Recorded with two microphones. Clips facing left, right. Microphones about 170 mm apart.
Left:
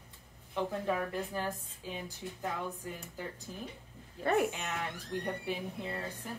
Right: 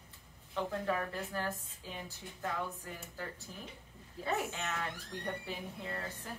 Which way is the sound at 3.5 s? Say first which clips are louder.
Left 5 dB; 15° left (ahead or behind).